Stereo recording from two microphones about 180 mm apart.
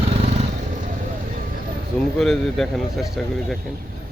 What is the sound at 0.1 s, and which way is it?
Vehicle, 35° right (ahead or behind).